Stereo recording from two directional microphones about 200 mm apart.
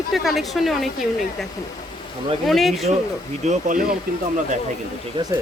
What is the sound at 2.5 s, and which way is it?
Speech, centre (ahead or behind).